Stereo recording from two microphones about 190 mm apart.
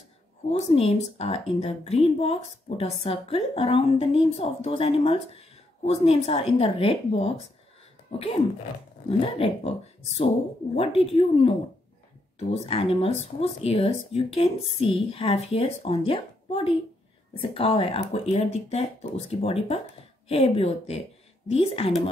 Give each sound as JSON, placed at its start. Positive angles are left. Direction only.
{"t": 0.5, "sound": "a woman's voice", "side_deg": 30}